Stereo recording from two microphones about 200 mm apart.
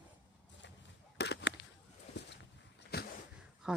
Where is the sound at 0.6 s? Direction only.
60° left (ahead or behind).